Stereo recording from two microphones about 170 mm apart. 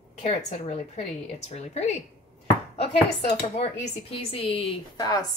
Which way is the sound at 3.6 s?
35° left (ahead or behind).